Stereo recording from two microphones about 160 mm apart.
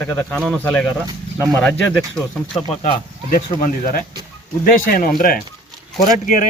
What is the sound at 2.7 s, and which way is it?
Speech, 40° left (ahead or behind).